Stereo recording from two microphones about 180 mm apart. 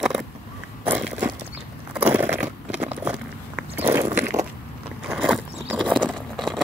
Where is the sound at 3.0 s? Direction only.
5° right (ahead or behind).